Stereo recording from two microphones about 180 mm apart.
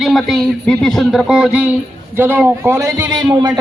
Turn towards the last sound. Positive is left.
turn(degrees=-20)  # may be behind; listen again after turning